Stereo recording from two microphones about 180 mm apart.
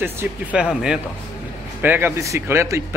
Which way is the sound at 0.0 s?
10° right (ahead or behind).